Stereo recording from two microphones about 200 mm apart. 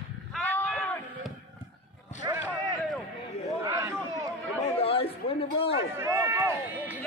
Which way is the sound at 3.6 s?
15° right (ahead or behind).